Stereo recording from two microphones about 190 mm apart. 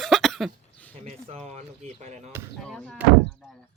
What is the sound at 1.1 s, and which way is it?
Speech, 35° right (ahead or behind).